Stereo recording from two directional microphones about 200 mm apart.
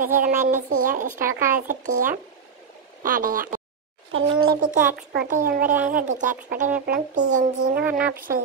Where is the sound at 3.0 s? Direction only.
45° right (ahead or behind).